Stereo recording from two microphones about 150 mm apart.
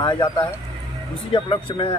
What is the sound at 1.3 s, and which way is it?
Speech, 35° left (ahead or behind).